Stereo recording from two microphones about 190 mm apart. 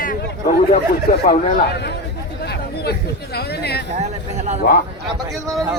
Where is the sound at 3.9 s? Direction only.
35° right (ahead or behind).